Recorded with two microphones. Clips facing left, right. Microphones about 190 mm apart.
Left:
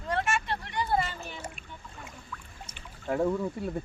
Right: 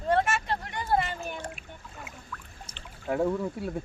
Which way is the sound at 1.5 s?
5° right (ahead or behind).